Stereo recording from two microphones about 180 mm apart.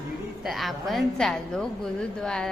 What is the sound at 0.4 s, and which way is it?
A woman's voice, centre (ahead or behind).